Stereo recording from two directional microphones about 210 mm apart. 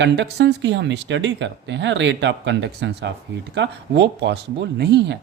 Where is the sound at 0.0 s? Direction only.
55° right (ahead or behind).